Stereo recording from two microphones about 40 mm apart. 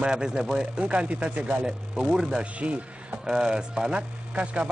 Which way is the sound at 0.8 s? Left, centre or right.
Right.